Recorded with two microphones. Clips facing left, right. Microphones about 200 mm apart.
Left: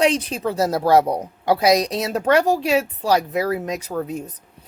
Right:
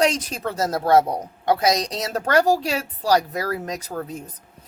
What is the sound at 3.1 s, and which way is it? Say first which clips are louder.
Speech: left 1 dB; 25° left (ahead or behind).